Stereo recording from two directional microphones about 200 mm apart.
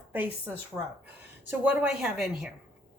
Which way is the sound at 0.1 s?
10° right (ahead or behind).